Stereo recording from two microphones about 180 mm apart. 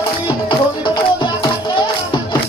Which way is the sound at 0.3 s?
25° left (ahead or behind).